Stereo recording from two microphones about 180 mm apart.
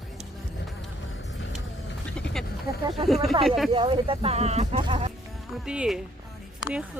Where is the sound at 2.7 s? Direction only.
20° right (ahead or behind).